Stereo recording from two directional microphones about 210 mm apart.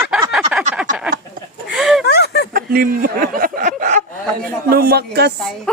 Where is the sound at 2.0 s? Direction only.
50° left (ahead or behind).